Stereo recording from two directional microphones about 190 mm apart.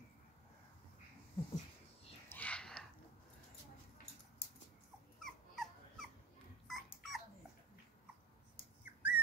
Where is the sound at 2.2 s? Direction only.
10° left (ahead or behind).